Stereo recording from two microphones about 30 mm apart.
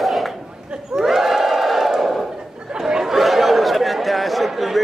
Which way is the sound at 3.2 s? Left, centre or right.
Centre.